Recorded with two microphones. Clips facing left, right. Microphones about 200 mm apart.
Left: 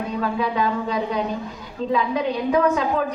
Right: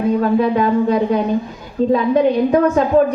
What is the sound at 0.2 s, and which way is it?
A woman's voice, 50° right (ahead or behind).